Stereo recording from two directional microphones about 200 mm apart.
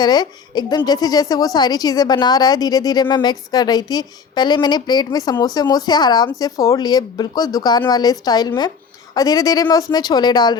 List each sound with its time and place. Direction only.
0.0 s a woman's voice: 20° left (ahead or behind)